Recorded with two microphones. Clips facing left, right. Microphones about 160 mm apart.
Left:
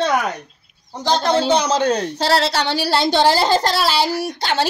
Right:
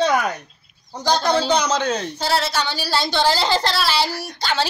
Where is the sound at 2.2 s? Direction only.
75° left (ahead or behind); by 4.1 s 45° left (ahead or behind).